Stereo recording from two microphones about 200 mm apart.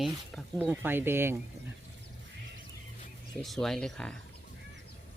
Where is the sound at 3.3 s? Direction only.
Centre (ahead or behind).